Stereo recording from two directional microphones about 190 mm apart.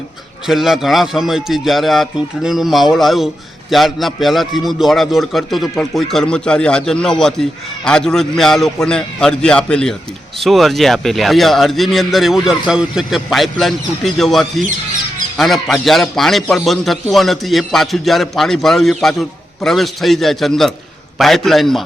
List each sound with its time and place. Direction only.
0.4 s a man's voice: centre (ahead or behind)